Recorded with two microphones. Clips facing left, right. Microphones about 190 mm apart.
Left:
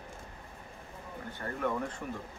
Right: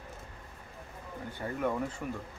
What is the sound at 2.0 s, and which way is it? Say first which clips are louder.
Speech: right 2 dB; 5° right (ahead or behind).